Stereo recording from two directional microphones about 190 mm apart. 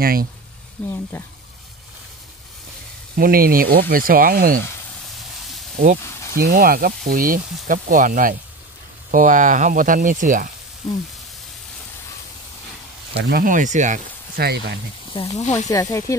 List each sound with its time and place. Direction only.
0.0 s speech: 50° right (ahead or behind)
0.8 s speech: 5° left (ahead or behind)
3.2 s speech: 50° right (ahead or behind)
5.0 s vehicle: centre (ahead or behind)
6.3 s speech: 50° right (ahead or behind)
13.3 s speech: 45° right (ahead or behind)
15.1 s speech: 20° left (ahead or behind)
15.4 s speech: 35° left (ahead or behind)
15.7 s speech: 15° left (ahead or behind)